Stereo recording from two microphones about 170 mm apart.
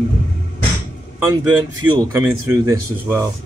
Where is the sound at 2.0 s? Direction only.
20° right (ahead or behind).